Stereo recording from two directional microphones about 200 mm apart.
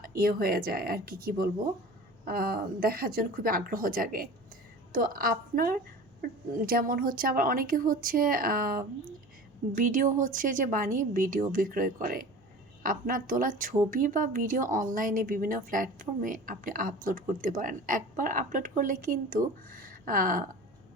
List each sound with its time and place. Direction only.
0.0 s a woman's voice: 45° right (ahead or behind)